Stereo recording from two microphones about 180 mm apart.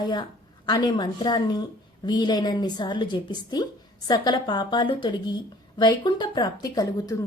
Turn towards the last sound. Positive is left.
turn(degrees=20)  # may be behind; listen again after turning